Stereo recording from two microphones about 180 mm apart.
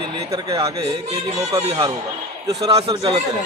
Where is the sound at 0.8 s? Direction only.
35° right (ahead or behind).